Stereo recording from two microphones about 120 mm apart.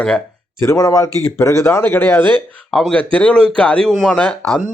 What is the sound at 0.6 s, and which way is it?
Speech, 25° left (ahead or behind).